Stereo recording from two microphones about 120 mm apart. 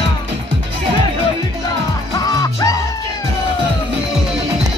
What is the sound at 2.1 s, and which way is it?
Music, 30° left (ahead or behind).